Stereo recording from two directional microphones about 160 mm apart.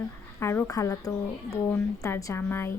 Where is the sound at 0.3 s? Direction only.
15° left (ahead or behind).